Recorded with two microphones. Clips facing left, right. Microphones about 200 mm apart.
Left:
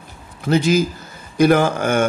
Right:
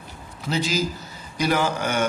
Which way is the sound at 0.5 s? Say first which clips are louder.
Left 8 dB; 55° left (ahead or behind).